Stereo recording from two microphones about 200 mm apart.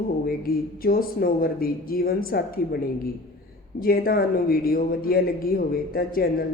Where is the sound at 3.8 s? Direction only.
45° left (ahead or behind).